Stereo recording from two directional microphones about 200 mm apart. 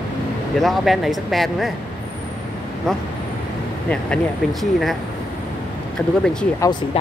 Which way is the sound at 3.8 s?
5° left (ahead or behind).